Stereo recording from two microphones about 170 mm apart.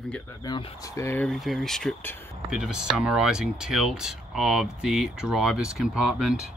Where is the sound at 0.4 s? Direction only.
25° left (ahead or behind).